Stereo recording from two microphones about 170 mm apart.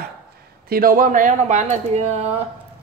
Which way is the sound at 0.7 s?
60° right (ahead or behind).